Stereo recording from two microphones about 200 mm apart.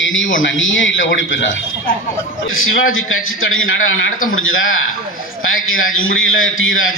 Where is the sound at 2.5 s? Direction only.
85° left.